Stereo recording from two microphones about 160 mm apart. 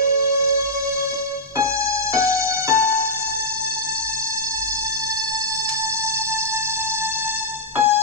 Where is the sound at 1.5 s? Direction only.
15° right (ahead or behind).